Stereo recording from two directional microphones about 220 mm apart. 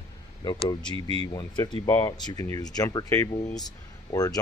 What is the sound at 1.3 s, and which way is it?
Speech, 20° left (ahead or behind).